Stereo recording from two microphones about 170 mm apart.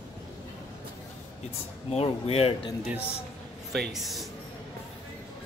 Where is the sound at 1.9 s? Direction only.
35° left (ahead or behind).